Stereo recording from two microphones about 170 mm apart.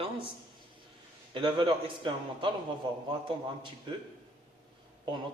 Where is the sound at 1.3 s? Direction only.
30° right (ahead or behind).